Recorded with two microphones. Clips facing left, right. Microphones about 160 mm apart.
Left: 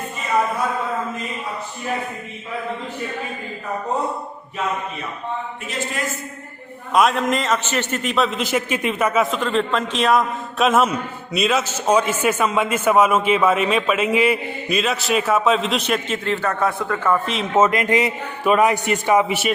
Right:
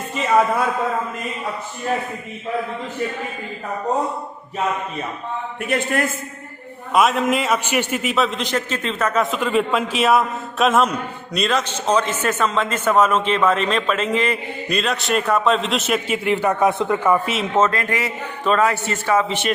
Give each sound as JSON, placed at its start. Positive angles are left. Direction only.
{"t": 5.6, "sound": "a man's voice", "side_deg": -60}
{"t": 6.9, "sound": "a man's voice", "side_deg": 0}
{"t": 9.2, "sound": "a man's voice", "side_deg": -5}
{"t": 17.5, "sound": "a man's voice", "side_deg": 15}